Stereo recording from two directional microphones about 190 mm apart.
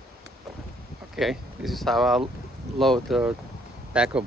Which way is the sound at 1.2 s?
Centre (ahead or behind).